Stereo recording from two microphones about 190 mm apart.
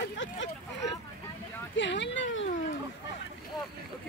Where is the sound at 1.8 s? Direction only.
70° left (ahead or behind).